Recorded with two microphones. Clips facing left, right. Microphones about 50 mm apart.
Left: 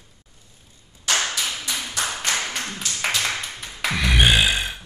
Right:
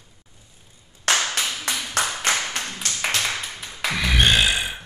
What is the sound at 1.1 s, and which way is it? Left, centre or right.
Clapping, right.